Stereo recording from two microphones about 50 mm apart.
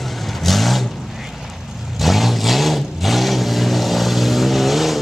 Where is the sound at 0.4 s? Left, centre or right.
Centre.